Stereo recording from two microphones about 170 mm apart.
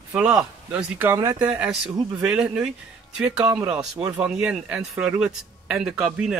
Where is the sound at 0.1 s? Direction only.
5° right (ahead or behind).